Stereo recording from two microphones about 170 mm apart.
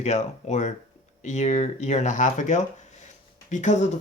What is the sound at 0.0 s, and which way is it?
Speech, 40° left (ahead or behind).